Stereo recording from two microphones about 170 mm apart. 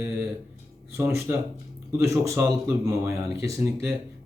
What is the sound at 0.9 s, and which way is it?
Speech, 15° right (ahead or behind).